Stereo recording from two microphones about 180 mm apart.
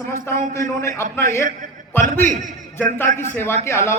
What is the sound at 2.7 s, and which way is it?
A man's voice, 15° left (ahead or behind).